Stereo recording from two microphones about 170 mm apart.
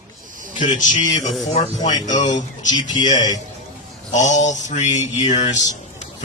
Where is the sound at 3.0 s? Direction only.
45° left (ahead or behind).